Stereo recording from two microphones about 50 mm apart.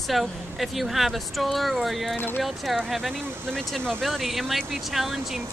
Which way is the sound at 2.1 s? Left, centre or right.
Left.